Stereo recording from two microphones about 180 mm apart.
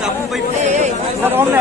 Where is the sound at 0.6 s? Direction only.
40° right (ahead or behind).